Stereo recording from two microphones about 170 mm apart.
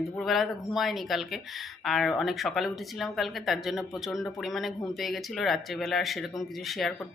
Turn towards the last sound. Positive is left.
turn(degrees=0)  # may be behind; listen again after turning